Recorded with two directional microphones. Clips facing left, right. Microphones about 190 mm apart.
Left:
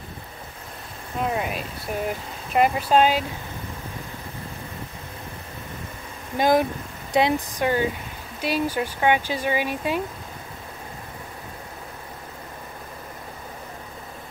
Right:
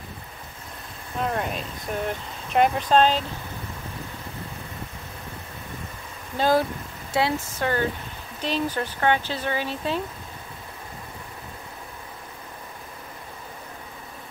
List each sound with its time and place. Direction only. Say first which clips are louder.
1.2 s speech: left 1 dB; 5° left (ahead or behind)
6.3 s speech: left 2 dB; 15° left (ahead or behind)